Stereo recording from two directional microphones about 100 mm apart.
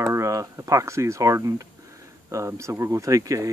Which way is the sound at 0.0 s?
30° right (ahead or behind).